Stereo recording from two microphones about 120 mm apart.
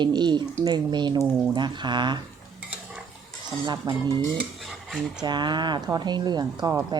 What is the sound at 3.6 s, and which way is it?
Speech, 40° right (ahead or behind).